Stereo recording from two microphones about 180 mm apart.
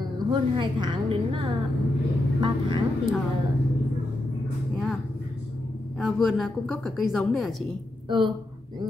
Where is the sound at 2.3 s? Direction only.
25° right (ahead or behind).